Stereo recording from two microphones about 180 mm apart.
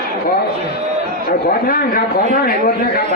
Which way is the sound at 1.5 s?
55° left (ahead or behind).